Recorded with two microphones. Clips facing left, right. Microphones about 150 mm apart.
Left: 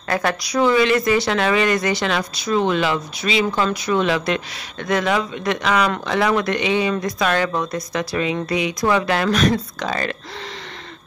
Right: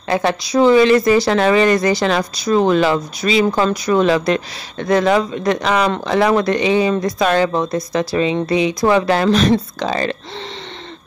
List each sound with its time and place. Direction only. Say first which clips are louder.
0.1 s speech: right 4 dB; 25° right (ahead or behind)